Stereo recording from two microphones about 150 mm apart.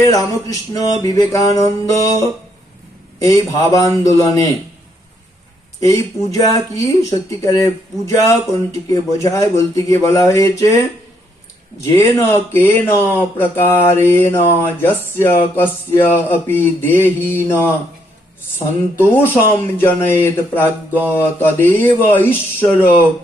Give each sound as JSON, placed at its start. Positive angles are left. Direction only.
{"t": 0.0, "sound": "speech", "side_deg": 25}
{"t": 5.8, "sound": "speech", "side_deg": 20}
{"t": 11.8, "sound": "mantra", "side_deg": 20}